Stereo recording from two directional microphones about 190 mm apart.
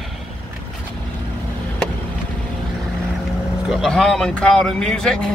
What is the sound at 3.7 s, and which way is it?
Speech, centre (ahead or behind).